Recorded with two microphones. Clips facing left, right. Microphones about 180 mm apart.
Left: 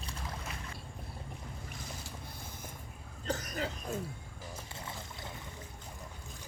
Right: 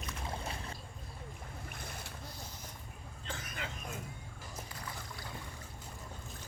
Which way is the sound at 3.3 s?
40° left (ahead or behind).